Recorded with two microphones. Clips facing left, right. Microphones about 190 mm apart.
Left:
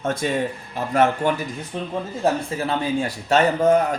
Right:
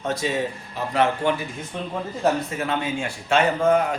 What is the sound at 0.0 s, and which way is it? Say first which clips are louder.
Speech: left 2 dB; 50° left (ahead or behind).